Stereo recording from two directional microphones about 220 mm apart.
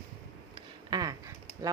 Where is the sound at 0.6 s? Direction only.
20° right (ahead or behind).